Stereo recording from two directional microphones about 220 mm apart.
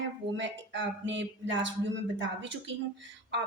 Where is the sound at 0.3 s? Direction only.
55° right (ahead or behind).